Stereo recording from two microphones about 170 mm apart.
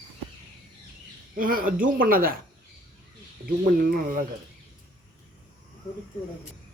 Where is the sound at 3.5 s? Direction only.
60° right (ahead or behind).